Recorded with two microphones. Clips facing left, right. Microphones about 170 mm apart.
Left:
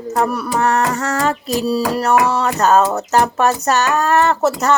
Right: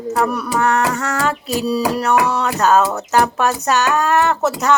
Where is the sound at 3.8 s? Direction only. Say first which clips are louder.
Left 1 dB; 10° right (ahead or behind).